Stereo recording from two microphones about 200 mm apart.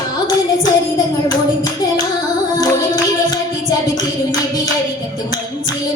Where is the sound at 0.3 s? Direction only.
20° left (ahead or behind).